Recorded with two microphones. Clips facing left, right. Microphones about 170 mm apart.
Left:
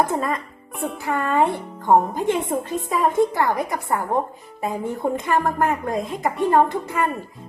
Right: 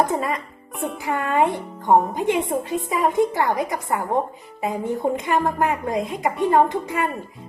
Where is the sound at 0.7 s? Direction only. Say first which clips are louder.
Even; centre (ahead or behind).